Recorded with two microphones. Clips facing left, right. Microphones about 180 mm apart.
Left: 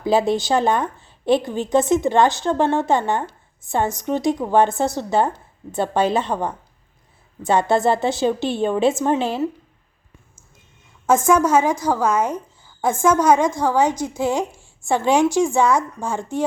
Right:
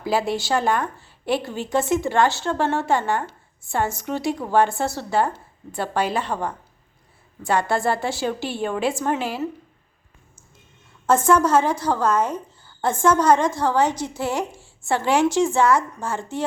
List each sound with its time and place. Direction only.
0.0 s a woman's voice: 20° left (ahead or behind)
11.3 s a woman's voice: 10° left (ahead or behind)